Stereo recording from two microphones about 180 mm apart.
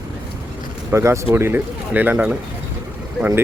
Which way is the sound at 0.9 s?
15° right (ahead or behind).